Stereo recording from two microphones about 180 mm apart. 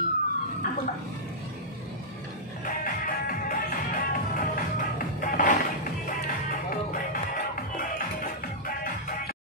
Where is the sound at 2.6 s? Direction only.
50° left (ahead or behind).